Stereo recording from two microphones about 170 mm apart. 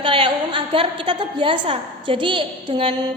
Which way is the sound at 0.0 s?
30° right (ahead or behind).